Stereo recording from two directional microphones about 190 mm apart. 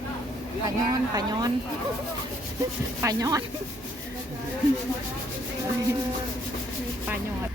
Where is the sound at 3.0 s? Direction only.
20° right (ahead or behind).